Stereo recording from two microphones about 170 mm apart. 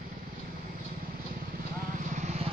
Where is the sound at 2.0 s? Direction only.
45° right (ahead or behind).